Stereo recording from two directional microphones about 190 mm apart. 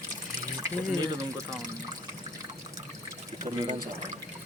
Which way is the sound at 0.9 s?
15° right (ahead or behind).